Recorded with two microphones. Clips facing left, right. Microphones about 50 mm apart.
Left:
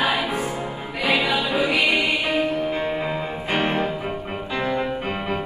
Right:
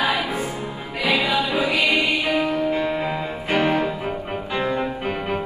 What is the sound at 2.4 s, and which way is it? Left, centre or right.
Music, right.